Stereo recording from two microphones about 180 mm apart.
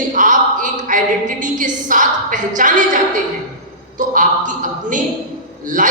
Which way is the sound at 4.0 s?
45° right (ahead or behind).